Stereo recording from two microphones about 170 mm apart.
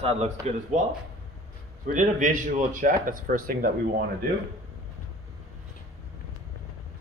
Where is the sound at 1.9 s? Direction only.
50° right (ahead or behind).